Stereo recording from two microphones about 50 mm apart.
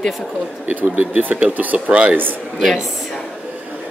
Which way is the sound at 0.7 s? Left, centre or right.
Right.